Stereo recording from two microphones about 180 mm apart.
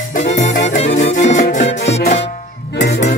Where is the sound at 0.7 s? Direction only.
40° left (ahead or behind).